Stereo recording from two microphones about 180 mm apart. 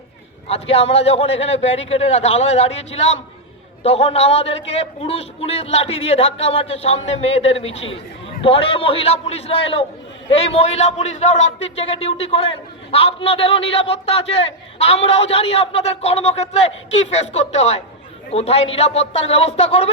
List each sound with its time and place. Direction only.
0.4 s a man's voice: 35° left (ahead or behind)